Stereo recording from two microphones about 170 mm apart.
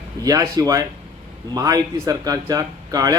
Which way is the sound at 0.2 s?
20° right (ahead or behind).